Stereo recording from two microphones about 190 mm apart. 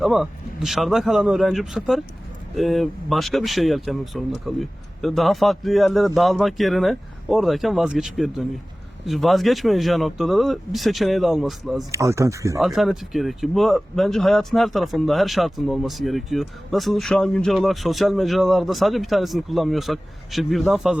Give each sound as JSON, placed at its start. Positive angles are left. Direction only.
{"t": 0.0, "sound": "speech", "side_deg": 0}
{"t": 11.9, "sound": "speech", "side_deg": -15}
{"t": 12.5, "sound": "speech", "side_deg": 0}